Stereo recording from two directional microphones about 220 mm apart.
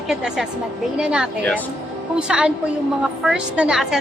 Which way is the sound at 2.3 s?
5° right (ahead or behind).